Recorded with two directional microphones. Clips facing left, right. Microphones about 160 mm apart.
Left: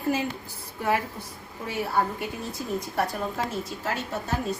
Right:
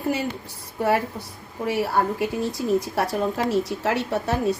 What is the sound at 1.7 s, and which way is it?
A woman's voice, 85° right.